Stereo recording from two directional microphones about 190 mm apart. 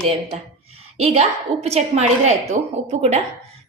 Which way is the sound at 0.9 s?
35° right (ahead or behind).